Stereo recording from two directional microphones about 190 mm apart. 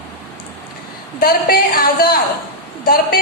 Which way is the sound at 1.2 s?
50° left (ahead or behind).